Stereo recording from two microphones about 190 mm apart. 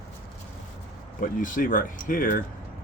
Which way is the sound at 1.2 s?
45° left (ahead or behind).